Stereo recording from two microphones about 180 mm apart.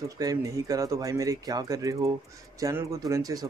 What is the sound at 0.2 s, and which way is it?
Speech, 20° right (ahead or behind).